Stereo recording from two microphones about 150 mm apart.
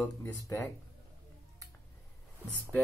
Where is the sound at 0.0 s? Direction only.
15° left (ahead or behind).